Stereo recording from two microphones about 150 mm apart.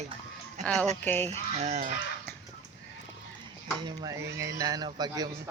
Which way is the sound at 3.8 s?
25° right (ahead or behind).